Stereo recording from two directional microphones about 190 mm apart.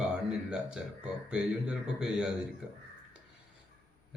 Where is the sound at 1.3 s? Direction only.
5° right (ahead or behind).